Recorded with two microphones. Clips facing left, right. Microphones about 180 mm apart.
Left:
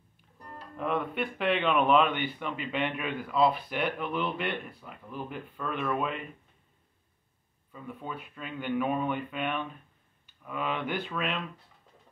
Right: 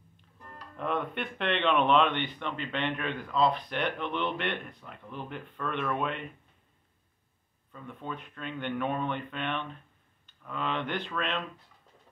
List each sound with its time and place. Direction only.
0.7 s speech: 5° left (ahead or behind)
7.7 s speech: 5° left (ahead or behind)